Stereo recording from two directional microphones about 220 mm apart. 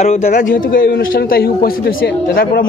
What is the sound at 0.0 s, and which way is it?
A man's voice, 30° left (ahead or behind).